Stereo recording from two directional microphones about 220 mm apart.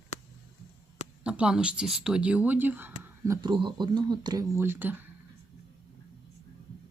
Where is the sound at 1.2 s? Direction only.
5° right (ahead or behind).